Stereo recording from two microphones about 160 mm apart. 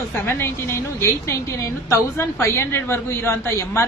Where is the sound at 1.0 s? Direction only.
20° left (ahead or behind).